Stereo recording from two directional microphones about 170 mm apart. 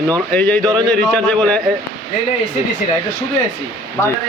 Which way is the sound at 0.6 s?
20° right (ahead or behind).